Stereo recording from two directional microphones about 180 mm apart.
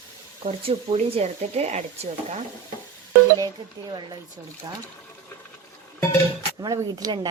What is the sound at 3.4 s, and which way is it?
Speech, 25° right (ahead or behind).